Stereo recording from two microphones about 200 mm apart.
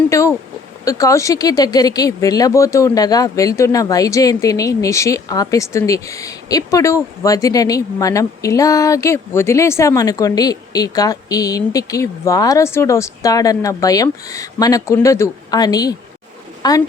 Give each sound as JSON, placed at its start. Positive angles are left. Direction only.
{"t": 0.1, "sound": "a woman's voice", "side_deg": 15}